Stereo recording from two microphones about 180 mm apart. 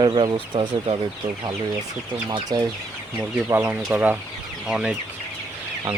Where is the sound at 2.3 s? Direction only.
25° right (ahead or behind).